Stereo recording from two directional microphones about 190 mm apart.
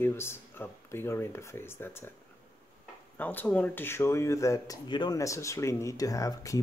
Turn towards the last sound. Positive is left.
turn(degrees=15)  # may be behind; listen again after turning